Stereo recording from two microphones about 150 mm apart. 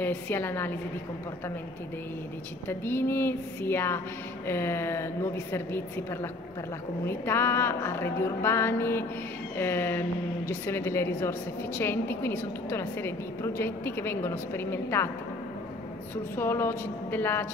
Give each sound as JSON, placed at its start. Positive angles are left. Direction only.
{"t": 0.0, "sound": "a woman's voice", "side_deg": 15}
{"t": 2.7, "sound": "a woman's voice", "side_deg": 15}
{"t": 7.1, "sound": "a woman's voice", "side_deg": 15}
{"t": 16.3, "sound": "a woman's voice", "side_deg": 15}